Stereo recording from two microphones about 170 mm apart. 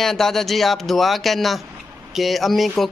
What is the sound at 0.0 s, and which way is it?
Speech, centre (ahead or behind).